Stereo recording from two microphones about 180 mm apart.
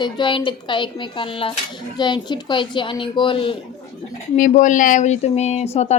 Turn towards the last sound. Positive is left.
turn(degrees=35)  # may be behind; listen again after turning